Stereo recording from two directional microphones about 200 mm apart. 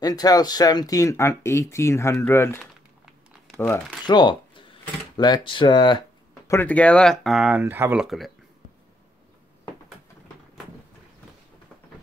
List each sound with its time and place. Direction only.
0.0 s speech: 20° left (ahead or behind)
4.0 s speech: 25° left (ahead or behind); by 8.3 s centre (ahead or behind)